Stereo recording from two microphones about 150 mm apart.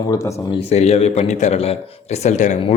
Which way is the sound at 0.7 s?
45° left (ahead or behind).